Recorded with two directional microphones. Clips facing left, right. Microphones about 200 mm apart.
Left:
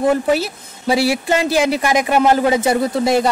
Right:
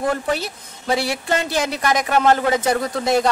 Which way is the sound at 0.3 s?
5° left (ahead or behind).